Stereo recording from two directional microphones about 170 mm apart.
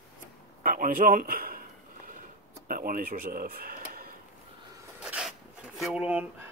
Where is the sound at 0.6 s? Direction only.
50° right (ahead or behind).